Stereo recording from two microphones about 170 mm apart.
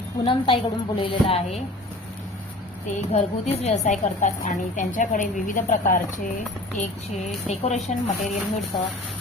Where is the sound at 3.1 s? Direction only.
40° left (ahead or behind).